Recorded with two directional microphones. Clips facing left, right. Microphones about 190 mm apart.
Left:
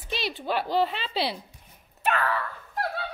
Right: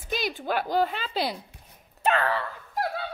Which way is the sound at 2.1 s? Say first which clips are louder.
Right 1 dB; 35° right (ahead or behind).